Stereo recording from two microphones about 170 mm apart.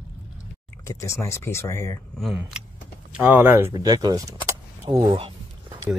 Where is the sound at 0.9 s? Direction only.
15° left (ahead or behind).